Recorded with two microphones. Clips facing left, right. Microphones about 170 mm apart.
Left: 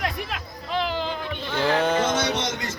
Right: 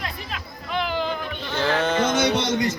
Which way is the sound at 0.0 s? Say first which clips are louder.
Left 4 dB; 50° left (ahead or behind).